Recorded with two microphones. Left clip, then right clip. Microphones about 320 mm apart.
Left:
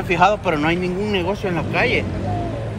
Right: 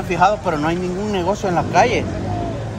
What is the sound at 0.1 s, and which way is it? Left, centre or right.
Speech, centre.